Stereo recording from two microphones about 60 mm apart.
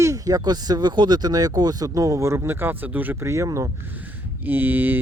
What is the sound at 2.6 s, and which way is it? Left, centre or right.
Speech, right.